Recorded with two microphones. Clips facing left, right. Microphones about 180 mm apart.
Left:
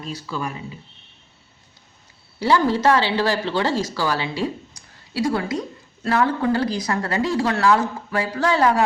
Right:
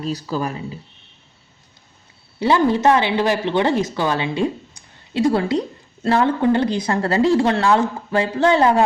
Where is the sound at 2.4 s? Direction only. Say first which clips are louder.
Right 2 dB; 20° right (ahead or behind).